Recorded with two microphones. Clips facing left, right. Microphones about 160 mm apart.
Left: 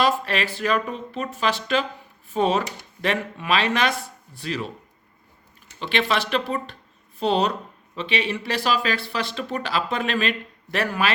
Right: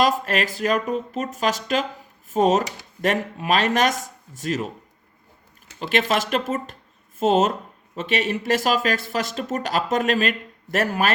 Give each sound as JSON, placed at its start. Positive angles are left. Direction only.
{"t": 0.0, "sound": "speech", "side_deg": -45}
{"t": 5.8, "sound": "speech", "side_deg": -40}